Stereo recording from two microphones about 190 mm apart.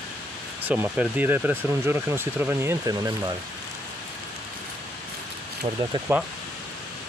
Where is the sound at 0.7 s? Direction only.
10° right (ahead or behind).